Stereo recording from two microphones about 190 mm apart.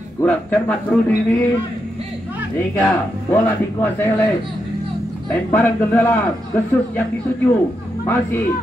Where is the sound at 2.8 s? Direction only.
10° left (ahead or behind).